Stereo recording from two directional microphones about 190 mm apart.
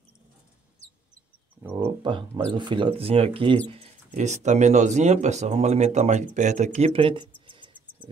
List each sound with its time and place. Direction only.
1.6 s speech: 10° right (ahead or behind)
2.0 s speech: 25° right (ahead or behind)
7.4 s cricket: 25° right (ahead or behind)